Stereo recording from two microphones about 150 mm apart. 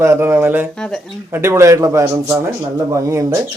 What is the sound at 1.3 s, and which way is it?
A man's voice, 15° right (ahead or behind).